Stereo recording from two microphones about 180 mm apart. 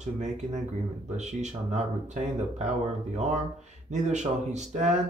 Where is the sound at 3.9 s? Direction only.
40° right (ahead or behind).